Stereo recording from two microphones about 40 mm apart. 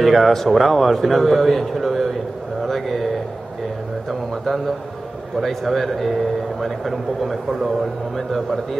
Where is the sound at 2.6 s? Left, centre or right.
Centre.